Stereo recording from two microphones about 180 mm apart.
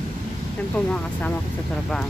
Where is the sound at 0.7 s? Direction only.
5° left (ahead or behind).